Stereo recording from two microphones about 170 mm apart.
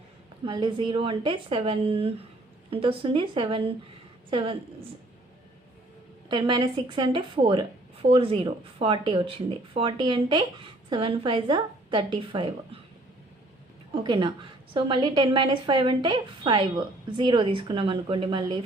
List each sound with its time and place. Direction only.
0.4 s a woman's voice: 30° right (ahead or behind)
6.3 s a woman's voice: 25° right (ahead or behind)
13.9 s a woman's voice: 30° right (ahead or behind)